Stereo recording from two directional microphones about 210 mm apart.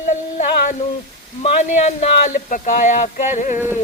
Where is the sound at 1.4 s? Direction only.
35° left (ahead or behind).